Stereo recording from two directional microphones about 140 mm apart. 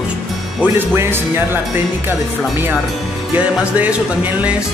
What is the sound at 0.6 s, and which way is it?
Music, 15° right (ahead or behind).